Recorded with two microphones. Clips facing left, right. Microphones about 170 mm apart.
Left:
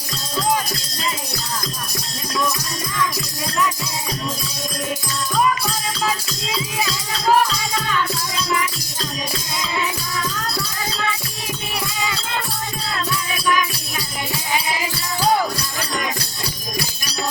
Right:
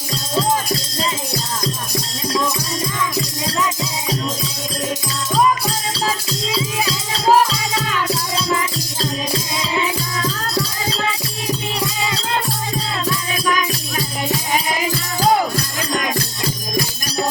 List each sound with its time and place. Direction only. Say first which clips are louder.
3.2 s music: right 2 dB; 25° right (ahead or behind)
5.3 s music: right 3 dB; 30° right (ahead or behind)
8.5 s music: right 2 dB; 30° right (ahead or behind)
15.2 s music: right 2 dB; 50° right (ahead or behind)